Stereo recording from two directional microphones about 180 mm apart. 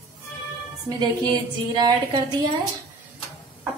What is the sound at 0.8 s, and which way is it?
A woman's voice, 20° right (ahead or behind).